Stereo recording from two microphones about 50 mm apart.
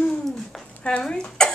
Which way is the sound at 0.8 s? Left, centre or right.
Centre.